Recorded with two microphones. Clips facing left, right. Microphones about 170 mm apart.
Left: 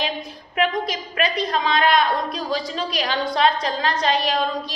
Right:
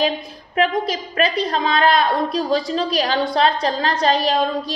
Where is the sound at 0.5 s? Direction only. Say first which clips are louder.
Right 3 dB; 35° right (ahead or behind).